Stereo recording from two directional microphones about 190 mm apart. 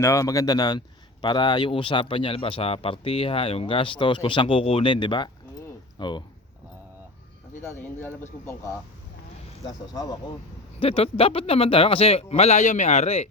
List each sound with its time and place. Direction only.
0.0 s a man's voice: 15° left (ahead or behind)
7.6 s a man's voice: 15° left (ahead or behind)
10.8 s speech: 30° left (ahead or behind)